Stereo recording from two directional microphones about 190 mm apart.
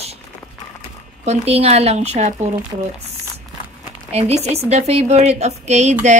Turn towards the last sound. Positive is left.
turn(degrees=-35)  # may be behind; listen again after turning